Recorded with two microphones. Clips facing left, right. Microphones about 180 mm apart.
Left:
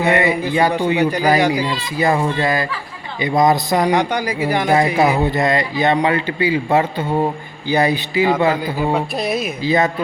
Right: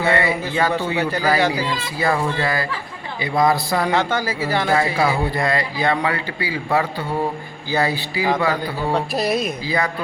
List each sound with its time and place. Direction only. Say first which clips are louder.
0.0 s a man's voice: left 3 dB; 20° left (ahead or behind)
8.9 s speech: right 2 dB; centre (ahead or behind)
9.6 s a man's voice: left 10 dB; 25° left (ahead or behind)